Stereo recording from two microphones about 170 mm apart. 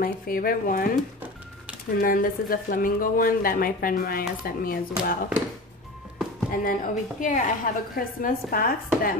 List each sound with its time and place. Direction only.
0.0 s a woman's voice: 60° left (ahead or behind)
2.0 s a woman's voice: 55° left (ahead or behind)
6.5 s a woman's voice: 55° left (ahead or behind)